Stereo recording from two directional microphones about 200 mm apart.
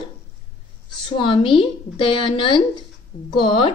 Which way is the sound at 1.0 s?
25° left (ahead or behind).